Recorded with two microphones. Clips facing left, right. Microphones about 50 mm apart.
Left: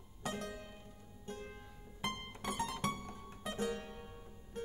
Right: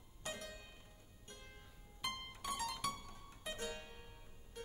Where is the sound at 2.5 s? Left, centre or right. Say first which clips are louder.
Left 5 dB; left.